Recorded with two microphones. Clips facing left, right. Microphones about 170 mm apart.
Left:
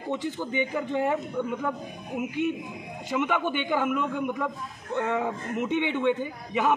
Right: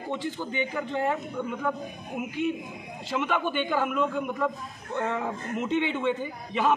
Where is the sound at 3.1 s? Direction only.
20° left (ahead or behind).